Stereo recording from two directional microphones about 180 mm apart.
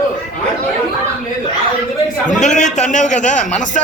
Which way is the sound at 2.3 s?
40° left (ahead or behind).